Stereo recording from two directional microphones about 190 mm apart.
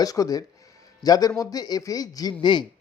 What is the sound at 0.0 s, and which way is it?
A man's voice, 20° left (ahead or behind).